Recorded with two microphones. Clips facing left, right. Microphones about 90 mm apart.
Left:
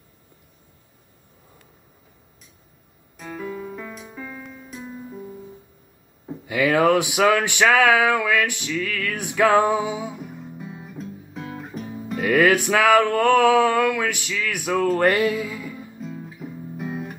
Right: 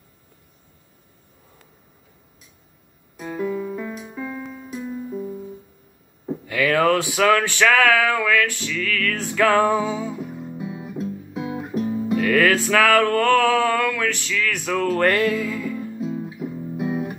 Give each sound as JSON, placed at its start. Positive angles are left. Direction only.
{"t": 3.3, "sound": "music", "side_deg": -5}
{"t": 6.4, "sound": "music", "side_deg": 20}
{"t": 10.3, "sound": "guitar", "side_deg": -5}
{"t": 12.2, "sound": "music", "side_deg": 15}
{"t": 16.0, "sound": "music", "side_deg": -5}